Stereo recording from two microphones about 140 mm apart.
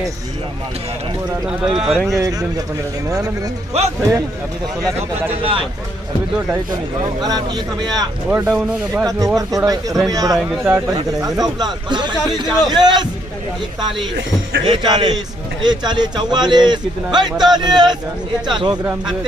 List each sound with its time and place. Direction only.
1.7 s speech: centre (ahead or behind)
2.1 s speech: 25° right (ahead or behind)
3.8 s a man's voice: 50° right (ahead or behind)
5.4 s speech: 40° right (ahead or behind)
7.2 s speech: 30° right (ahead or behind)
8.3 s speech: 10° right (ahead or behind)
9.0 s speech: 25° right (ahead or behind)
10.6 s speech: 15° right (ahead or behind); by 13.1 s 30° right (ahead or behind)
14.7 s speech: 35° right (ahead or behind)